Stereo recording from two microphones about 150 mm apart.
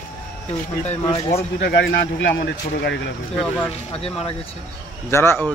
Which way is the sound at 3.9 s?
40° left (ahead or behind).